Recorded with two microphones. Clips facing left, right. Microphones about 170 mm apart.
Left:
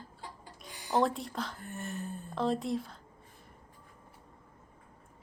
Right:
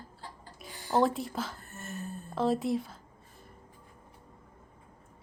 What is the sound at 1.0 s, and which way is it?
Speech, centre (ahead or behind).